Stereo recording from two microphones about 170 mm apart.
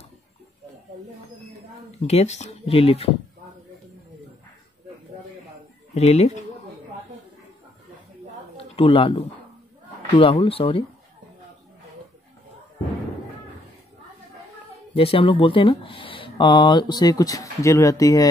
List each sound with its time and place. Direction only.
2.0 s speech: 40° left (ahead or behind)
5.9 s speech: 40° left (ahead or behind)
8.7 s speech: 30° left (ahead or behind)
15.0 s speech: 35° left (ahead or behind)